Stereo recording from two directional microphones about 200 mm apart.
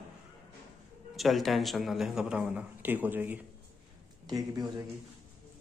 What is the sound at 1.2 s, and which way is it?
A man's voice, centre (ahead or behind).